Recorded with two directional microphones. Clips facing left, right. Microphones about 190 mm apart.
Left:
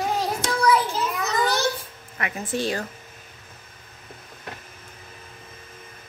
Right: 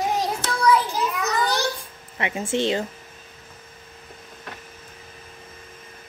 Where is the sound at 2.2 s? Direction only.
25° right (ahead or behind).